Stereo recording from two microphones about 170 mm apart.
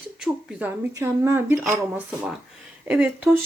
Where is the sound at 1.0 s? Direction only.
20° right (ahead or behind).